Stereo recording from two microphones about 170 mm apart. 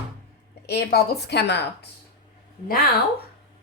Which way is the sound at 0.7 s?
70° left (ahead or behind).